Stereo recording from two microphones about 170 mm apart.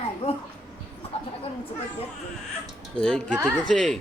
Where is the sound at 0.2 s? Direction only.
35° left (ahead or behind).